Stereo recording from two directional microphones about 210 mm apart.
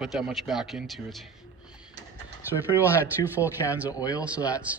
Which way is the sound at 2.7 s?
10° right (ahead or behind).